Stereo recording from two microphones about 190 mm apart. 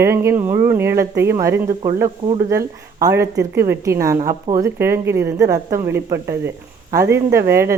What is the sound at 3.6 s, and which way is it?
Speech, 15° right (ahead or behind).